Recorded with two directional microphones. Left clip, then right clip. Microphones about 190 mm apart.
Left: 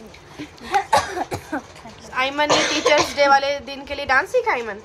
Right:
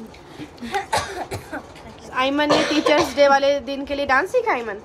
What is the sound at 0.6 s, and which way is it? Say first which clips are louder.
Speech: left 5 dB; 15° left (ahead or behind).